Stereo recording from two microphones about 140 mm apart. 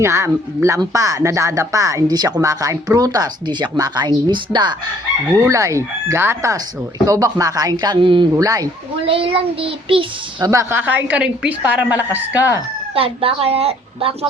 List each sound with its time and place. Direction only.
0.0 s speech: 20° right (ahead or behind)
5.4 s speech: 20° right (ahead or behind)
8.4 s speech: 25° right (ahead or behind)
9.0 s child singing: 40° right (ahead or behind)
10.4 s a woman's voice: 20° right (ahead or behind)
12.9 s a woman's voice: 40° right (ahead or behind)